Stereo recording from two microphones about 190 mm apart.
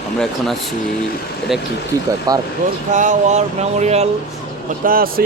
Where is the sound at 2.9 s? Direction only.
40° right (ahead or behind).